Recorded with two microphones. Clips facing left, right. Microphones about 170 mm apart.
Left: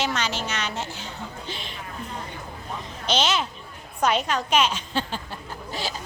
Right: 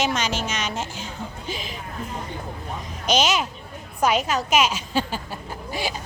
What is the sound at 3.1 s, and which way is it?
A woman's voice, 10° right (ahead or behind).